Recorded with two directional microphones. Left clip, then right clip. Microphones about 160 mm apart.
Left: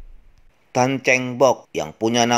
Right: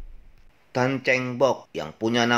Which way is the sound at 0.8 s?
40° left (ahead or behind).